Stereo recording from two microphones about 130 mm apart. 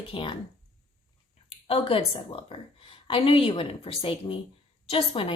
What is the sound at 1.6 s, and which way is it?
A woman's voice, 45° left (ahead or behind).